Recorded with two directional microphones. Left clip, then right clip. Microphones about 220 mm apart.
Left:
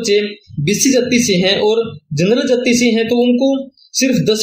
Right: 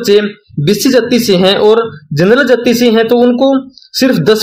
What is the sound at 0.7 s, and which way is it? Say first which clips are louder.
A man's voice: right 4 dB; 25° right (ahead or behind).